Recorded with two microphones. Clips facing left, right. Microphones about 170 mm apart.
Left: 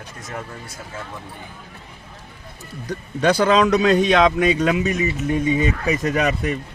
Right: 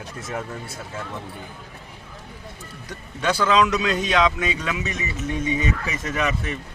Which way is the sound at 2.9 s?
40° left (ahead or behind).